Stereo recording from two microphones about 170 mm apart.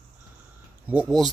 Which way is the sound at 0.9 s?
5° right (ahead or behind).